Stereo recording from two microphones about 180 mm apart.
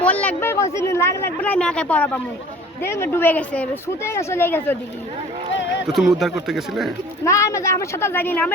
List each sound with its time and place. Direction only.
0.0 s speech: 10° left (ahead or behind)
5.5 s a sound: 80° left
5.9 s speech: centre (ahead or behind)
7.3 s speech: 15° left (ahead or behind)